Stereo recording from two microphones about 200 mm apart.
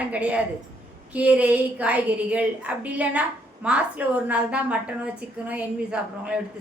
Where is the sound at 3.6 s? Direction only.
5° right (ahead or behind).